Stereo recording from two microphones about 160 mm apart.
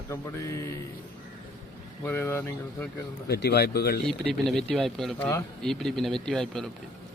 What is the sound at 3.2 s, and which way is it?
Speech, 90° left.